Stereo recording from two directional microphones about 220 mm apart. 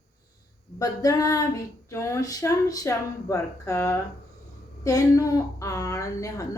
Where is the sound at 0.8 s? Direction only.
15° left (ahead or behind).